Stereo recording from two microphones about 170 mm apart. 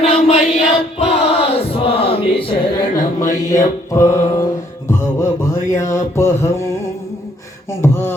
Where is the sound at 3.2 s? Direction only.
20° left (ahead or behind).